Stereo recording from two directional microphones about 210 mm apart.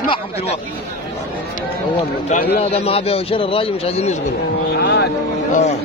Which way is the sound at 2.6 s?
30° left (ahead or behind).